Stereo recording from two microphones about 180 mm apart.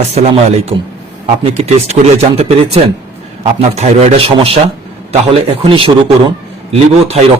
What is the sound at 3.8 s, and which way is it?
A man's voice, 35° right (ahead or behind).